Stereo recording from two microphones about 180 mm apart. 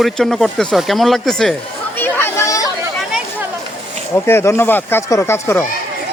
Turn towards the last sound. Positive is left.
turn(degrees=15)  # may be behind; listen again after turning